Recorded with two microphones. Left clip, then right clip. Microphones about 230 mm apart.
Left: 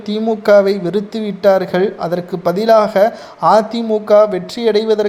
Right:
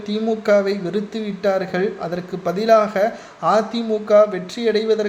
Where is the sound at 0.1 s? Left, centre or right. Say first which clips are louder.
Left 6 dB; left.